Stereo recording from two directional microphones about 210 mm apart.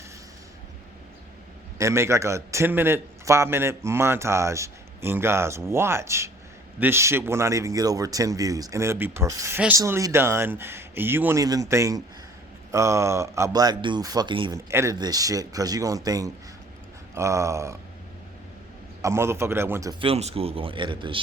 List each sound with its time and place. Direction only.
1.8 s speech: 15° right (ahead or behind)
19.0 s a man's voice: 10° right (ahead or behind)